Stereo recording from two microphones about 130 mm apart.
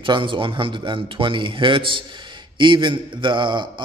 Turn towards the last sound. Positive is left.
turn(degrees=-35)  # may be behind; listen again after turning